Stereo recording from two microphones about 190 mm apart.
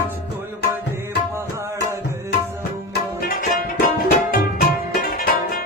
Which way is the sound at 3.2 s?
50° left (ahead or behind).